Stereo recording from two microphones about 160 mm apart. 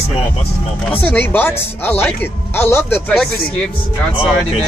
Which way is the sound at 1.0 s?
10° left (ahead or behind).